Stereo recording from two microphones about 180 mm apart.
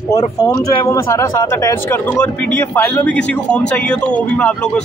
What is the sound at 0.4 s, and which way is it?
Speech, 20° left (ahead or behind).